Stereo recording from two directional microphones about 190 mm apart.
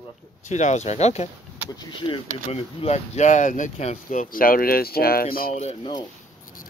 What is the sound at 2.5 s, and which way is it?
Speech, 30° left (ahead or behind).